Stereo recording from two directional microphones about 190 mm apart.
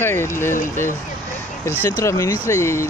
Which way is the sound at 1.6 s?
15° left (ahead or behind).